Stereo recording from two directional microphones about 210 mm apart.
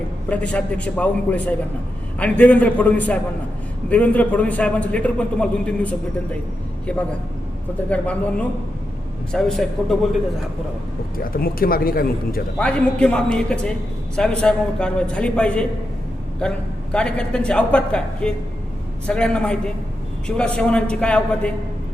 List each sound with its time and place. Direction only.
0.3 s a man's voice: 5° left (ahead or behind)
7.9 s a man's voice: 5° left (ahead or behind)
11.2 s speech: 45° left (ahead or behind)
12.5 s a man's voice: 5° left (ahead or behind)